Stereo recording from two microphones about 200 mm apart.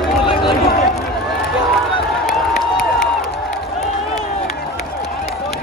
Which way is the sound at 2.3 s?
Centre (ahead or behind).